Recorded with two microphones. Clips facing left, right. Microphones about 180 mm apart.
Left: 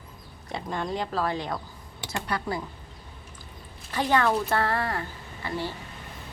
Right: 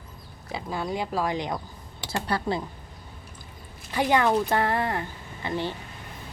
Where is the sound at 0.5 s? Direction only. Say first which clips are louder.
Even; 5° right (ahead or behind).